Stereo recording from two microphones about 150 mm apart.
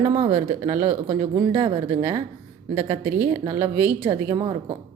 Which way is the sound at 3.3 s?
45° right (ahead or behind).